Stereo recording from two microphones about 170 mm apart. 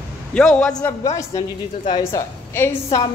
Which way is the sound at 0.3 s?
5° left (ahead or behind).